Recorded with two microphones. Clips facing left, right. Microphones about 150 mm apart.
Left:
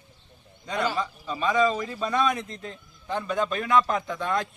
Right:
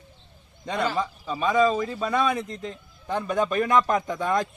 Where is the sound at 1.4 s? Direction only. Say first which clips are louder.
Right 2 dB; 5° right (ahead or behind).